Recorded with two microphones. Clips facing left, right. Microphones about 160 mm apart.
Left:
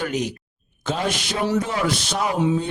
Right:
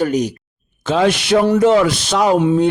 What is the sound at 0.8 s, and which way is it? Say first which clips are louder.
Speech: right 9 dB; 90° right.